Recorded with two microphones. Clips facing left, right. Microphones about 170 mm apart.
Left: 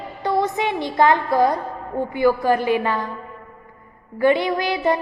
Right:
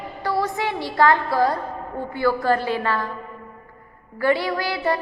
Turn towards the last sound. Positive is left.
turn(degrees=20)  # may be behind; listen again after turning